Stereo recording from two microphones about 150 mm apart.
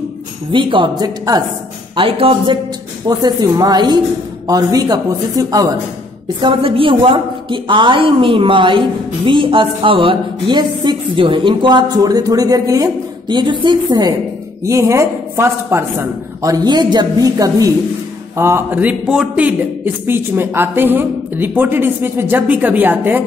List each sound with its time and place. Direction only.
0.5 s a woman's voice: 35° right (ahead or behind)
2.0 s a woman's voice: 40° right (ahead or behind)
6.4 s a woman's voice: 35° right (ahead or behind); by 23.2 s 15° right (ahead or behind)